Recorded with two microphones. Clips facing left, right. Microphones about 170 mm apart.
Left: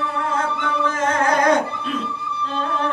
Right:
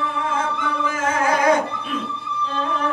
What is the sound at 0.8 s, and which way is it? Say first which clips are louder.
Music: left 1 dB; 5° right (ahead or behind).